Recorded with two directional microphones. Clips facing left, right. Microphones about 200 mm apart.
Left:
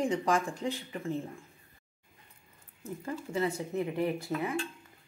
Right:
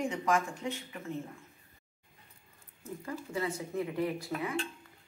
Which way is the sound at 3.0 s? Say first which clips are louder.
Left 3 dB; 25° left (ahead or behind).